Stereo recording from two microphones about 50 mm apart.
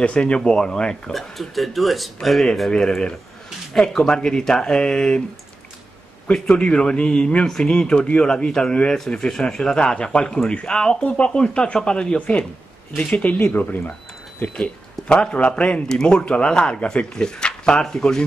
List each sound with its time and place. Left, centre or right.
0.0 s speech: left
1.1 s speech: centre
2.7 s speech: centre
6.3 s speech: centre
13.5 s speech: left
14.6 s speech: centre